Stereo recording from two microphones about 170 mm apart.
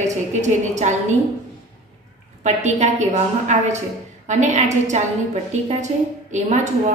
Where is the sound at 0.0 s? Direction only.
45° right (ahead or behind).